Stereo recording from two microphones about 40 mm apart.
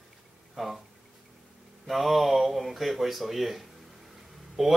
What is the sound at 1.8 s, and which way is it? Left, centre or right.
Speech, centre.